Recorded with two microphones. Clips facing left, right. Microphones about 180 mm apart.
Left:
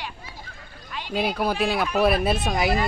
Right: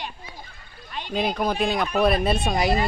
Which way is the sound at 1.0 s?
5° left (ahead or behind).